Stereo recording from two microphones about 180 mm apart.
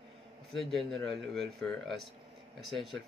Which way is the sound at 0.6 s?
Centre (ahead or behind).